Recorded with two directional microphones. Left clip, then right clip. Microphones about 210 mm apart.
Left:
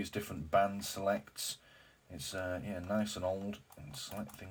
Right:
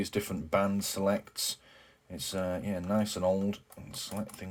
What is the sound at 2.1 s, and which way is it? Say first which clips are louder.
Speech: right 5 dB; 50° right (ahead or behind).